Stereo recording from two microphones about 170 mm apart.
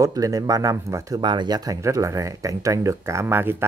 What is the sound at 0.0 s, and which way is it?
Speech, 20° right (ahead or behind).